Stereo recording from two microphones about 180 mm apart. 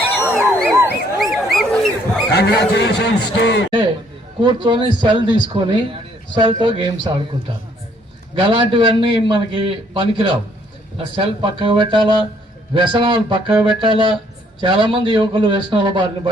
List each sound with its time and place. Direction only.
0.3 s a sound: 5° left (ahead or behind)
2.3 s speech: 70° left (ahead or behind)
4.4 s a man's voice: 25° right (ahead or behind)
8.4 s a man's voice: 30° right (ahead or behind)